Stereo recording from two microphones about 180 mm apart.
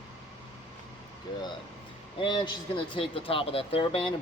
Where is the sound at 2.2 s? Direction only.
25° left (ahead or behind).